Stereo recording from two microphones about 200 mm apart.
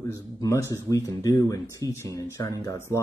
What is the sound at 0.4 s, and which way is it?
Speech, 15° left (ahead or behind).